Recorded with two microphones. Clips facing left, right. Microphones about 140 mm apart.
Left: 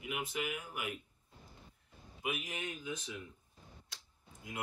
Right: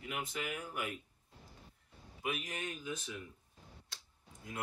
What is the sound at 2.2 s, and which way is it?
Speech, 15° left (ahead or behind).